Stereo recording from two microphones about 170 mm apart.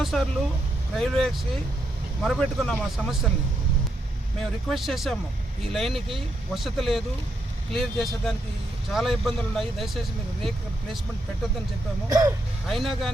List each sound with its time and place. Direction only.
0.0 s speech: centre (ahead or behind)
4.4 s speech: centre (ahead or behind)
12.0 s speech: 20° right (ahead or behind)
12.6 s speech: centre (ahead or behind)